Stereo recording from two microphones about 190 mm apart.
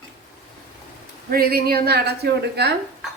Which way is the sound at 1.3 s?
55° right (ahead or behind).